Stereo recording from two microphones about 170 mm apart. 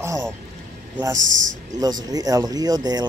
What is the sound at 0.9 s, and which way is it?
Speech, 20° right (ahead or behind).